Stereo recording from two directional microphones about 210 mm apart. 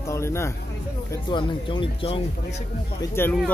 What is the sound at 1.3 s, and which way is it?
Speech, 25° left (ahead or behind).